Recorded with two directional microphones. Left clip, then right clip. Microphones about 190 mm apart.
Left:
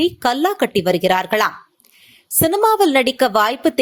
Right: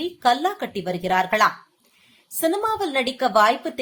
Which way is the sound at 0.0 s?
45° left (ahead or behind).